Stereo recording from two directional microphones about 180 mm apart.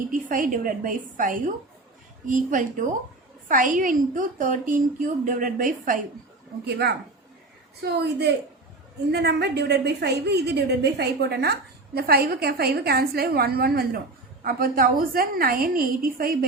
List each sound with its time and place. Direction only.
0.1 s a woman's voice: 50° right (ahead or behind)
6.7 s a woman's voice: 65° right (ahead or behind)